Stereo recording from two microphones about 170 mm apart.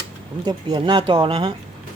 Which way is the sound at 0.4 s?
25° right (ahead or behind).